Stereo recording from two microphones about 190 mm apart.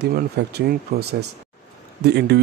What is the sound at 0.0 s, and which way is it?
Speech, 60° right (ahead or behind).